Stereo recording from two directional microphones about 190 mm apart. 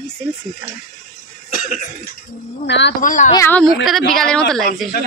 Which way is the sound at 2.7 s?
65° left (ahead or behind).